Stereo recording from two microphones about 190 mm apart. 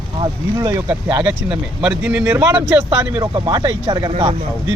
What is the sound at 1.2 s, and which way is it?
Speech, 5° right (ahead or behind).